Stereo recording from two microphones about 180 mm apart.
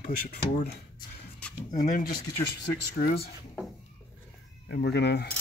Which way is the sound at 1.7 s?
50° left (ahead or behind).